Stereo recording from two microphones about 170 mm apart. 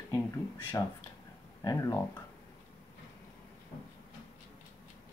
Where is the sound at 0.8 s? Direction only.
15° left (ahead or behind).